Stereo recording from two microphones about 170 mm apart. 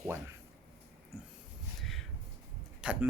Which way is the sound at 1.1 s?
10° right (ahead or behind).